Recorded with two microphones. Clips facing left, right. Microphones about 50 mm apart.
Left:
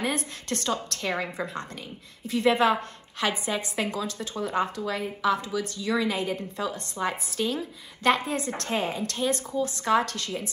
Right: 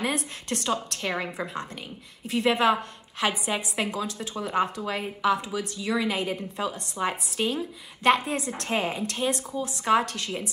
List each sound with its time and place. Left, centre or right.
0.0 s a woman's voice: right